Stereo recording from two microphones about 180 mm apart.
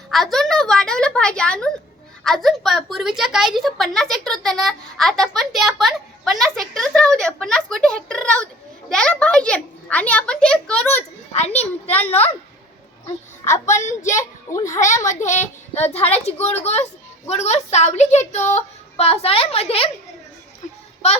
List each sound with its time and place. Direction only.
0.1 s a woman's voice: centre (ahead or behind)
11.3 s a child's voice: 35° left (ahead or behind)
13.4 s a child's voice: 40° left (ahead or behind)
14.2 s a child's voice: 15° left (ahead or behind)
15.0 s a child's voice: 45° left (ahead or behind)